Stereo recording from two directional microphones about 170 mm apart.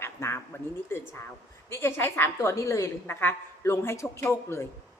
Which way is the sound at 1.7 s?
15° left (ahead or behind).